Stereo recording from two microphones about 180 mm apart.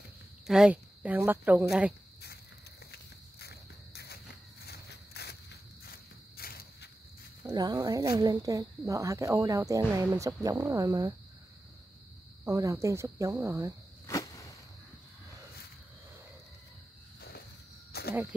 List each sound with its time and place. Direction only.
0.5 s speech: 5° right (ahead or behind)
2.9 s walk: 60° left (ahead or behind)
7.4 s speech: 20° right (ahead or behind)
12.4 s speech: 20° right (ahead or behind)
14.0 s a sound: 20° left (ahead or behind)
17.9 s snake: 60° left (ahead or behind)